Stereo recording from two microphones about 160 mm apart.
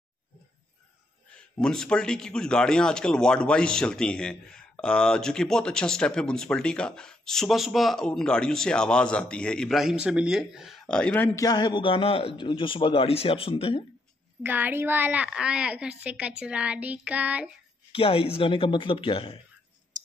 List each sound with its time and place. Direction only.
1.3 s a man's voice: 5° left (ahead or behind)
11.4 s speech: 25° left (ahead or behind)
14.4 s a woman's voice: 10° right (ahead or behind)
17.9 s speech: 35° left (ahead or behind)